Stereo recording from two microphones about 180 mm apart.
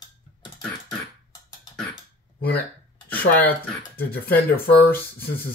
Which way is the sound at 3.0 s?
10° left (ahead or behind).